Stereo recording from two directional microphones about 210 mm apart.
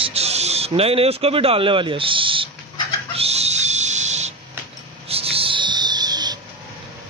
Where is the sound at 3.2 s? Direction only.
30° right (ahead or behind).